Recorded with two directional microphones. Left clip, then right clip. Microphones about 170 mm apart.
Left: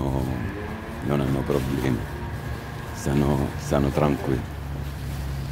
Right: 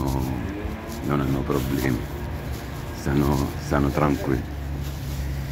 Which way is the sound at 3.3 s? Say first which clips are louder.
Even; 20° left (ahead or behind).